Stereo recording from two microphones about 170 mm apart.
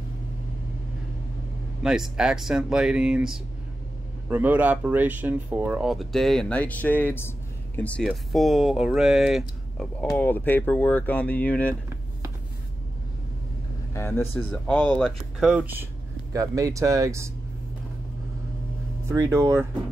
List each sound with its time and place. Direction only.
1.8 s speech: 5° right (ahead or behind)
10.1 s speech: 10° left (ahead or behind)
13.9 s speech: 15° left (ahead or behind); by 17.3 s 20° right (ahead or behind)
19.0 s speech: 20° right (ahead or behind)